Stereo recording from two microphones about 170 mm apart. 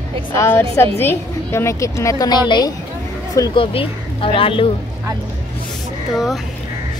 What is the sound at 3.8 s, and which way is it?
Speech, 35° left (ahead or behind).